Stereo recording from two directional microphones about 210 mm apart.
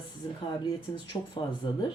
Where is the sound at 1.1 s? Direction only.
25° left (ahead or behind).